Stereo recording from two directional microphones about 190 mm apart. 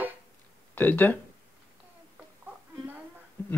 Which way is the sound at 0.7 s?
10° left (ahead or behind).